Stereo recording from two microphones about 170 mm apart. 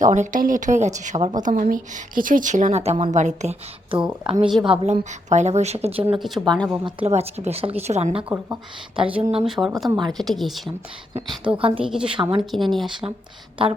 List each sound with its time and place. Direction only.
0.0 s a woman's voice: 50° right (ahead or behind)
4.2 s a woman's voice: 30° right (ahead or behind)
6.1 s a woman's voice: centre (ahead or behind)
6.8 s a woman's voice: 35° right (ahead or behind)
9.0 s a woman's voice: 10° right (ahead or behind)
11.1 s a woman's voice: 30° right (ahead or behind)
12.5 s a woman's voice: centre (ahead or behind)
12.8 s a woman's voice: 30° right (ahead or behind)